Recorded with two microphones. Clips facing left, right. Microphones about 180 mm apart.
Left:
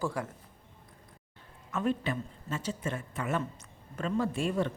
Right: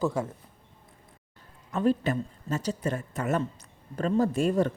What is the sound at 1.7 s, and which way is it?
Speech, 35° right (ahead or behind).